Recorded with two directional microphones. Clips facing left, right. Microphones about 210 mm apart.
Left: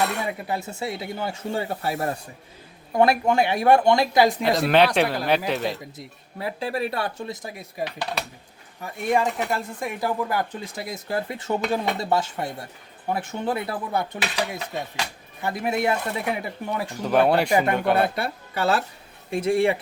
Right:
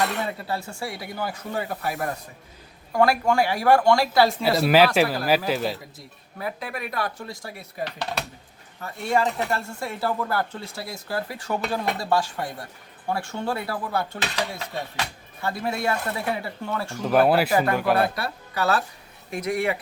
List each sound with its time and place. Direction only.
0.0 s speech: 15° left (ahead or behind)
4.4 s speech: 5° right (ahead or behind)
6.4 s speech: 30° left (ahead or behind)
17.0 s speech: centre (ahead or behind)
17.5 s speech: 20° left (ahead or behind)